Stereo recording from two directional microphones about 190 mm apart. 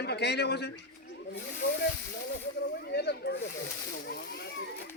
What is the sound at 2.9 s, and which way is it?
Speech, 60° left (ahead or behind).